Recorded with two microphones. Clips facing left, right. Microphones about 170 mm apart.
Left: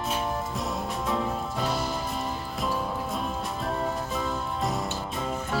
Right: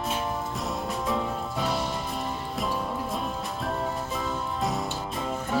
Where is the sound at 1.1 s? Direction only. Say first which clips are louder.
Left 1 dB; centre (ahead or behind).